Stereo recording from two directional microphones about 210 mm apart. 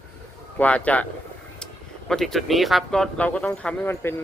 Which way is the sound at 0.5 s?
5° left (ahead or behind).